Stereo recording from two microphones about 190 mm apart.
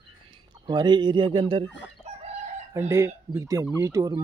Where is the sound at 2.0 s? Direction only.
35° right (ahead or behind).